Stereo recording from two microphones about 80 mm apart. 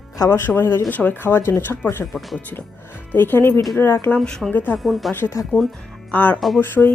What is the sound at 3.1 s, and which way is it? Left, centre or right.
Speech, left.